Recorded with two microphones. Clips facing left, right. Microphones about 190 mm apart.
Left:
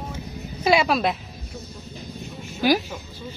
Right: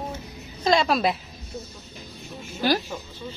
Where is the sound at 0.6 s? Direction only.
5° left (ahead or behind).